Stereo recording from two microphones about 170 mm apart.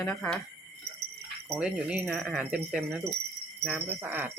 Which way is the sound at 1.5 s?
5° right (ahead or behind).